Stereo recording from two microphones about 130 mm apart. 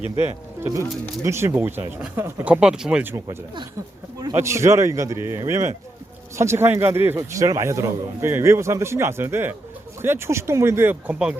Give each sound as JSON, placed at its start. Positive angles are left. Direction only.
{"t": 0.2, "sound": "speech", "side_deg": -20}
{"t": 3.0, "sound": "speech", "side_deg": -15}
{"t": 4.4, "sound": "a man's voice", "side_deg": -20}